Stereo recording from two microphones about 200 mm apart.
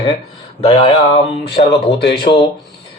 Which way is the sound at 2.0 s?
55° left (ahead or behind).